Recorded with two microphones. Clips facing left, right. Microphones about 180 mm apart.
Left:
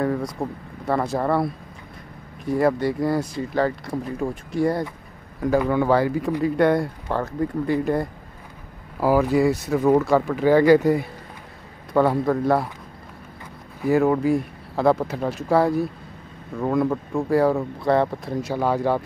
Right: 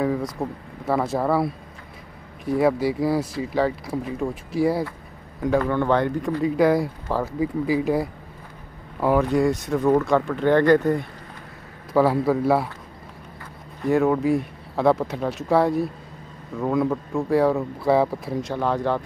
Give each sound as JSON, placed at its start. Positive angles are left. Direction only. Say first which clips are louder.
{"t": 0.0, "sound": "speech", "louder": "even", "side_deg": 0}
{"t": 11.9, "sound": "speech", "louder": "even", "side_deg": -5}
{"t": 13.7, "sound": "speech", "louder": "left 1 dB", "side_deg": 0}